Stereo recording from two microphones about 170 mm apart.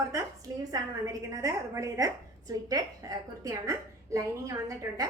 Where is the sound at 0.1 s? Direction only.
20° right (ahead or behind).